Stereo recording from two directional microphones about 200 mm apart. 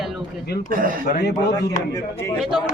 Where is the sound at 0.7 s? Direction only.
45° right (ahead or behind).